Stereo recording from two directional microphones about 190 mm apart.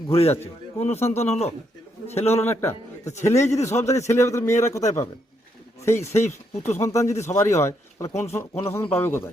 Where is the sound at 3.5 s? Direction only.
35° left (ahead or behind).